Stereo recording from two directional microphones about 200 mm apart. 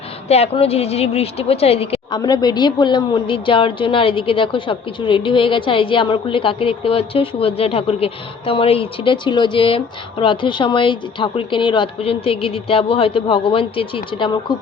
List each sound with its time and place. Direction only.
0.3 s a woman's voice: 30° left (ahead or behind)